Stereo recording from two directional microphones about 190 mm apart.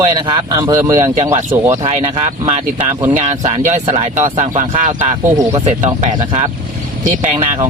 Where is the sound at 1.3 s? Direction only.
35° right (ahead or behind).